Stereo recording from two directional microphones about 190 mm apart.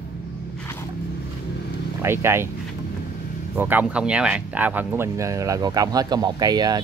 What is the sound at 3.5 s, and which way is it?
Speech, 10° right (ahead or behind).